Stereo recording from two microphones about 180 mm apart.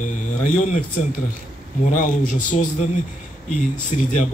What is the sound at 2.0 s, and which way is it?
Speech, 45° left (ahead or behind).